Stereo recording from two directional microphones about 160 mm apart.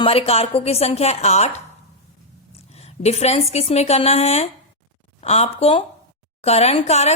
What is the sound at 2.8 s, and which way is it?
A woman's voice, 40° left (ahead or behind).